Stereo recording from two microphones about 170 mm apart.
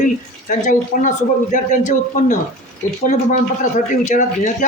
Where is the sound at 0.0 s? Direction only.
45° left (ahead or behind).